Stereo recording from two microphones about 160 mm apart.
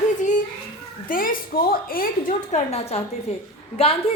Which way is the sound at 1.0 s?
60° left (ahead or behind).